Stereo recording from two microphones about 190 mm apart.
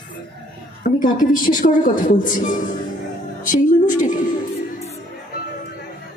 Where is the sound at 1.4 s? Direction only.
45° left (ahead or behind).